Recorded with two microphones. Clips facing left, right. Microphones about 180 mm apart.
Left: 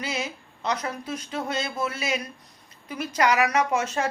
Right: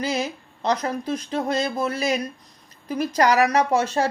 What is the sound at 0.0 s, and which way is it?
Speech, 35° right (ahead or behind).